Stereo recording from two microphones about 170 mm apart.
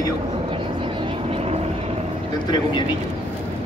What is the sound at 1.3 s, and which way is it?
Vehicle, 35° right (ahead or behind).